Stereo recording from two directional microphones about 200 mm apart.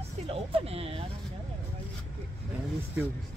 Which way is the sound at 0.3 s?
30° right (ahead or behind).